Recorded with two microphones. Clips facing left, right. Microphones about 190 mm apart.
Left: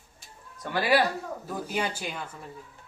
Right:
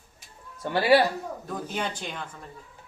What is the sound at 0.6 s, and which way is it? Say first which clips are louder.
Speech: right 4 dB; 30° right (ahead or behind).